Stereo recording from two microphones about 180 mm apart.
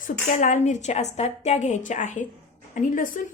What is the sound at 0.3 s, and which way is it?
A woman's voice, 45° left (ahead or behind).